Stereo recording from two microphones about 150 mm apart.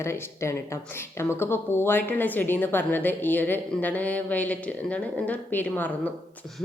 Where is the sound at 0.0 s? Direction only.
20° left (ahead or behind).